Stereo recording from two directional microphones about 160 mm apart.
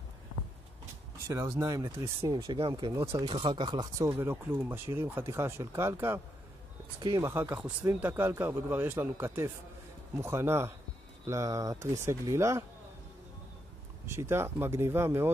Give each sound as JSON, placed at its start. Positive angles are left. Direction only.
{"t": 1.2, "sound": "speech", "side_deg": -15}
{"t": 2.7, "sound": "speech", "side_deg": -20}
{"t": 3.3, "sound": "speech", "side_deg": -30}
{"t": 4.1, "sound": "speech", "side_deg": -15}
{"t": 14.0, "sound": "speech", "side_deg": -15}